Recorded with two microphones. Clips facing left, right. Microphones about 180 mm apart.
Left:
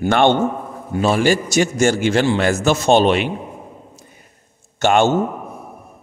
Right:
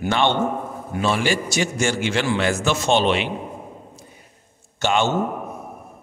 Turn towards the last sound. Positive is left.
turn(degrees=50)  # may be behind; listen again after turning